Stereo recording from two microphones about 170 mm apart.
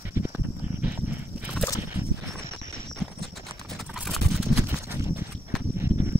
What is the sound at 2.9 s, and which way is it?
Clip-clop, centre (ahead or behind).